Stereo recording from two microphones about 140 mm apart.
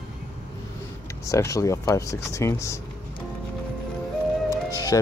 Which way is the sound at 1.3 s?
20° left (ahead or behind).